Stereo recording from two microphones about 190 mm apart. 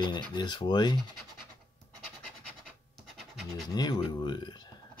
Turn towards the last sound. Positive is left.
turn(degrees=25)  # may be behind; listen again after turning